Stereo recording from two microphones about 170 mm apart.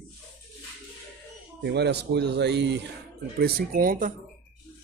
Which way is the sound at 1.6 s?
80° right.